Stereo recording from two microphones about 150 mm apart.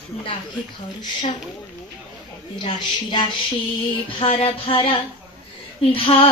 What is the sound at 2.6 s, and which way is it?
Speech, 30° left (ahead or behind).